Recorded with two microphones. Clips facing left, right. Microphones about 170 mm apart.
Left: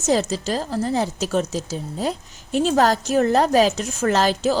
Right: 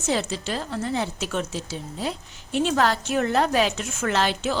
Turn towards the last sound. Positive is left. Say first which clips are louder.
# left 5 dB
turn(degrees=40)  # may be behind; listen again after turning